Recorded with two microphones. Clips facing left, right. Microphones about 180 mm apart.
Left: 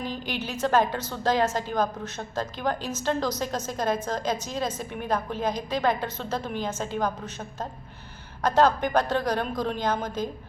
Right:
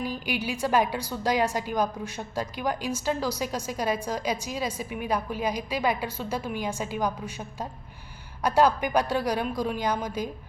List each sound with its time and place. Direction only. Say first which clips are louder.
0.0 s a woman's voice: right 2 dB; 10° right (ahead or behind)